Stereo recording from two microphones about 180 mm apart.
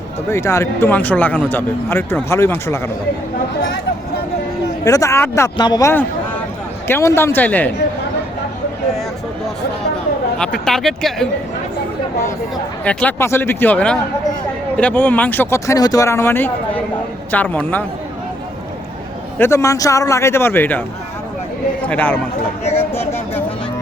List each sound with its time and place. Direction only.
0.3 s speech: 15° left (ahead or behind)
4.9 s speech: 15° left (ahead or behind)
10.3 s speech: 5° left (ahead or behind)
12.8 s speech: 5° left (ahead or behind)
19.4 s speech: 15° left (ahead or behind)
21.8 s speech: 5° left (ahead or behind)
22.7 s a sound: 15° left (ahead or behind)